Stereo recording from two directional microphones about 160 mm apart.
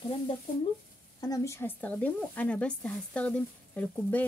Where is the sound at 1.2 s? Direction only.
20° left (ahead or behind).